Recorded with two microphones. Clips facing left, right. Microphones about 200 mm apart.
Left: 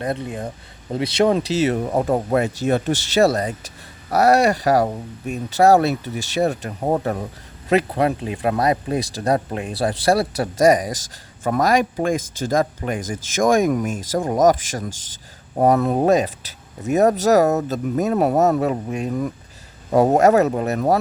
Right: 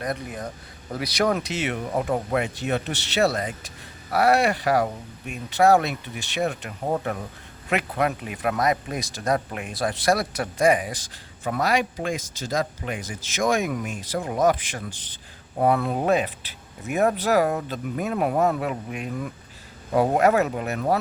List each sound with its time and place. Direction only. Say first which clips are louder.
0.0 s speech: left 5 dB; 25° left (ahead or behind)